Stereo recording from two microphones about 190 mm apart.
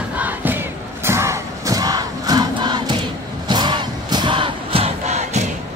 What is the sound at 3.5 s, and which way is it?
Battle cry, 25° right (ahead or behind).